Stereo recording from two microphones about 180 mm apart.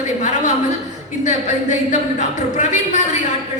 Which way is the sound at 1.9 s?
45° left (ahead or behind).